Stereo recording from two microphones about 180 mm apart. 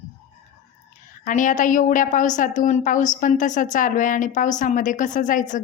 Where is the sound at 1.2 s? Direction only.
45° left (ahead or behind).